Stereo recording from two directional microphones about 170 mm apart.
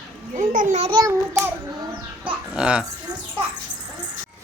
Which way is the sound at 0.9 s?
20° right (ahead or behind).